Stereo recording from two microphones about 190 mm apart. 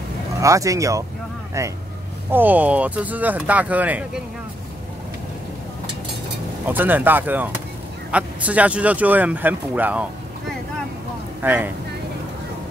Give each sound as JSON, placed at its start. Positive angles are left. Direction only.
{"t": 0.4, "sound": "speech", "side_deg": -15}
{"t": 6.6, "sound": "speech", "side_deg": -10}
{"t": 11.4, "sound": "speech", "side_deg": -10}